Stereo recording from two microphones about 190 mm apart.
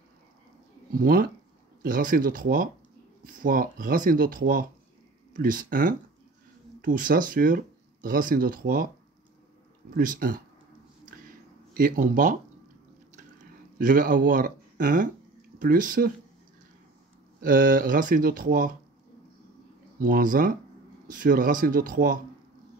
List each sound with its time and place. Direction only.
0.9 s speech: 50° right (ahead or behind)
9.9 s speech: 50° right (ahead or behind)
11.7 s speech: 45° right (ahead or behind)
13.7 s speech: 45° right (ahead or behind)
17.4 s speech: 45° right (ahead or behind)
20.0 s speech: 45° right (ahead or behind)